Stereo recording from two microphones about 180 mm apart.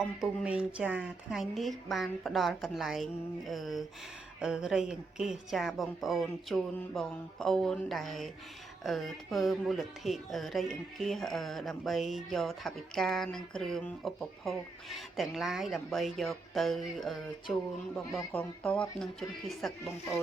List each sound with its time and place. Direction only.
0.4 s speech: 5° right (ahead or behind)